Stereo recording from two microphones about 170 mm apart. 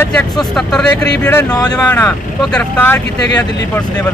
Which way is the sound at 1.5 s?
25° left (ahead or behind).